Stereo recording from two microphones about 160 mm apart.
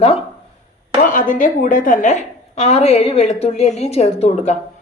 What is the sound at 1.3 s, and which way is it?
A woman's voice, 55° left (ahead or behind).